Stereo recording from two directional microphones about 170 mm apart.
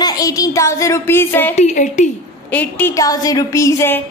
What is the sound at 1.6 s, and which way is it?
Speech, 45° left (ahead or behind).